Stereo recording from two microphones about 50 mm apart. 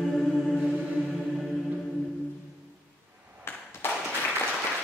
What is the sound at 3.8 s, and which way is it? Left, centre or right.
Applause, left.